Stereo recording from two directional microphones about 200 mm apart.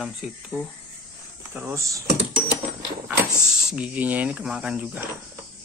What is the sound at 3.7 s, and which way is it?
Cricket, 5° right (ahead or behind).